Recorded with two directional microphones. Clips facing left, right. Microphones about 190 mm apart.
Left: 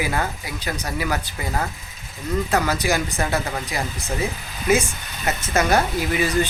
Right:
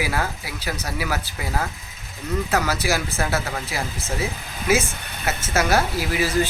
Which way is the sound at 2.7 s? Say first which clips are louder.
Left 2 dB; 5° right (ahead or behind).